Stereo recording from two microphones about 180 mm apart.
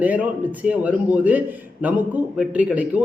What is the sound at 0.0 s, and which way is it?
A man's voice, 10° right (ahead or behind).